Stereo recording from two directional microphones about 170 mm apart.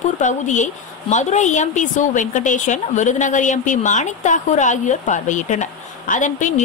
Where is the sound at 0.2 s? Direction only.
45° left (ahead or behind).